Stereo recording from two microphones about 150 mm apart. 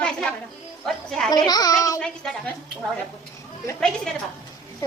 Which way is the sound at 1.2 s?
25° left (ahead or behind).